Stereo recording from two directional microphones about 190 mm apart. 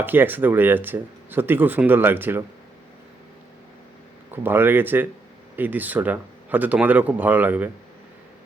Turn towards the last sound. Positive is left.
turn(degrees=-10)  # may be behind; listen again after turning